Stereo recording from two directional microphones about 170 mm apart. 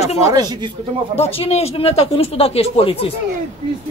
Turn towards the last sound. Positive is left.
turn(degrees=35)  # may be behind; listen again after turning